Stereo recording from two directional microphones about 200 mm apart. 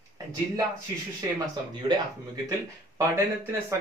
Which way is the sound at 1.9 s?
25° right (ahead or behind).